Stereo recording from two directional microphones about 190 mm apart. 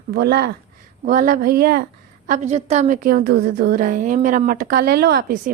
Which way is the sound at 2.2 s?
40° right (ahead or behind).